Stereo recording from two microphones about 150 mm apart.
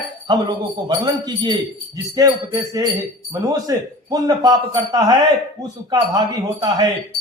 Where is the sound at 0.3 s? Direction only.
30° right (ahead or behind).